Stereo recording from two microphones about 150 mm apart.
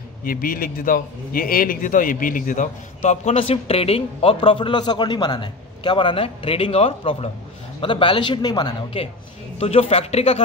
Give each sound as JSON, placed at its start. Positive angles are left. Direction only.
{"t": 0.2, "sound": "a man's voice", "side_deg": 70}